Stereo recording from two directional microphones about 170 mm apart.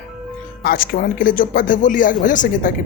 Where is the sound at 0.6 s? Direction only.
60° left (ahead or behind).